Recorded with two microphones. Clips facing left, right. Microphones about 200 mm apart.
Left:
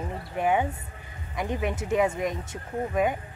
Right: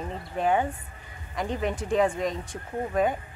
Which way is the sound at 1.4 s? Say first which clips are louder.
Even; 15° left (ahead or behind).